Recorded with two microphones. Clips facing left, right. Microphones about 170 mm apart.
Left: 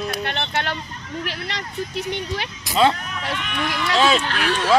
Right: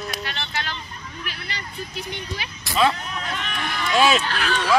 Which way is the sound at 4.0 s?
5° right (ahead or behind).